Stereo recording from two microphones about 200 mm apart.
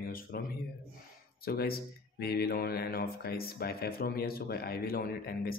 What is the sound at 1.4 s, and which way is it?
A man's voice, 50° left (ahead or behind).